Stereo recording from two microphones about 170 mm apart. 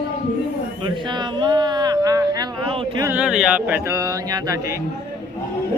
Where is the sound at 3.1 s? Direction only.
5° right (ahead or behind).